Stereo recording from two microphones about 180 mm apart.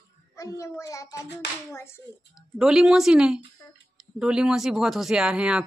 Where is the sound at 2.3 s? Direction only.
5° right (ahead or behind).